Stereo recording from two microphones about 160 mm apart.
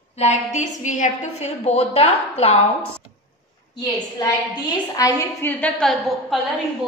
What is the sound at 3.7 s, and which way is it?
A woman's voice, 25° left (ahead or behind).